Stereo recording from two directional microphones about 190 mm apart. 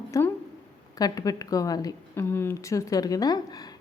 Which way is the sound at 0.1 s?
15° left (ahead or behind).